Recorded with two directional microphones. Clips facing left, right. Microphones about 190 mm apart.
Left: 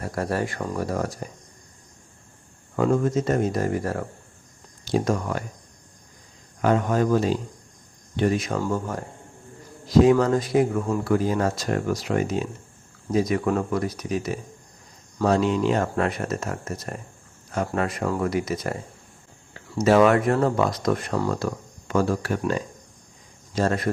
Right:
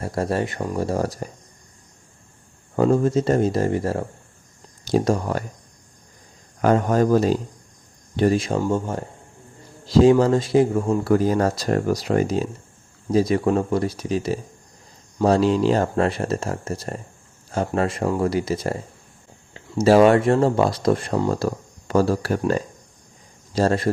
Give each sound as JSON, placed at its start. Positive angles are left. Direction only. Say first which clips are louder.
{"t": 0.0, "sound": "speech", "louder": "right 3 dB", "side_deg": -25}
{"t": 0.9, "sound": "speech", "louder": "right 4 dB", "side_deg": -35}
{"t": 2.7, "sound": "speech", "louder": "right 3 dB", "side_deg": -30}
{"t": 4.9, "sound": "speech", "louder": "right 3 dB", "side_deg": -35}
{"t": 6.6, "sound": "speech", "louder": "right 3 dB", "side_deg": -40}
{"t": 8.5, "sound": "speech", "louder": "right 4 dB", "side_deg": -20}
{"t": 19.8, "sound": "speech", "louder": "right 3 dB", "side_deg": -30}